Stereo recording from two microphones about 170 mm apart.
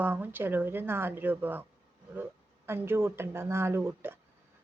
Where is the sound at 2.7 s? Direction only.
15° right (ahead or behind).